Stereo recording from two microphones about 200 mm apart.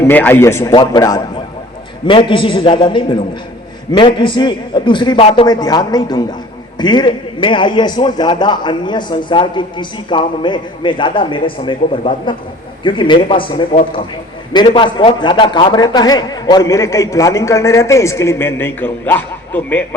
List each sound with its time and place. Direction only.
0.1 s a man's voice: 10° left (ahead or behind); by 13.7 s 25° left (ahead or behind)
14.7 s a man's voice: 25° left (ahead or behind); by 19.8 s 10° left (ahead or behind)